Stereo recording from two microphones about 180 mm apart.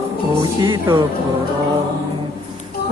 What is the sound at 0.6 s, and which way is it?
Music, 20° right (ahead or behind).